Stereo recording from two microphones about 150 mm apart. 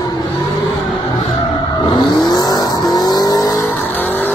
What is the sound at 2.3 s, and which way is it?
Vehicle, 25° left (ahead or behind).